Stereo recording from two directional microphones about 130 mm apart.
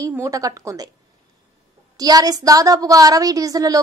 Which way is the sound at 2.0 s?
30° right (ahead or behind).